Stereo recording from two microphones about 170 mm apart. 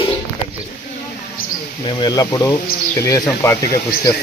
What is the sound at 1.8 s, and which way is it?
Speech, 25° left (ahead or behind).